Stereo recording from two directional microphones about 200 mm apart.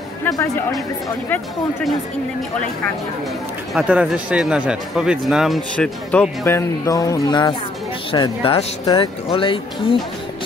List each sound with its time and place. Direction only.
0.2 s speech: 15° left (ahead or behind)
3.7 s speech: 5° right (ahead or behind); by 9.9 s 25° left (ahead or behind)